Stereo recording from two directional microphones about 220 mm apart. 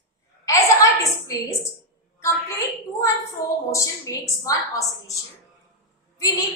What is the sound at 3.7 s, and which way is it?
A woman's voice, 15° left (ahead or behind).